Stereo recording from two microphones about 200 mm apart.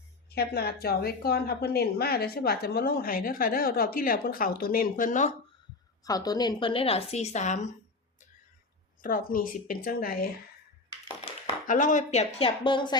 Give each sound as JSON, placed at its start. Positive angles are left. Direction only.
{"t": 0.3, "sound": "a woman's voice", "side_deg": 50}
{"t": 6.1, "sound": "a woman's voice", "side_deg": 20}
{"t": 9.0, "sound": "a woman's voice", "side_deg": 45}
{"t": 11.7, "sound": "speech", "side_deg": 40}